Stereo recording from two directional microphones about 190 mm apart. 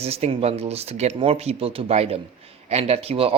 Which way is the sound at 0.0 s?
30° right (ahead or behind).